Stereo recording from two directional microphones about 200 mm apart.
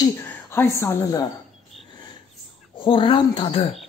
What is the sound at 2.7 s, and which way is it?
Speech, 25° left (ahead or behind).